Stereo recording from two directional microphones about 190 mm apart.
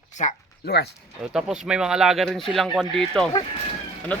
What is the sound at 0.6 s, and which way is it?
Speech, 60° left (ahead or behind).